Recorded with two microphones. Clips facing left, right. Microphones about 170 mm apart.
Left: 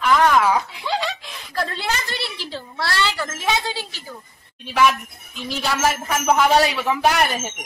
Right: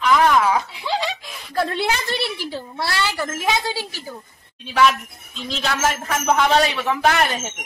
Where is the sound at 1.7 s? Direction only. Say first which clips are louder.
Right 4 dB; 55° right (ahead or behind).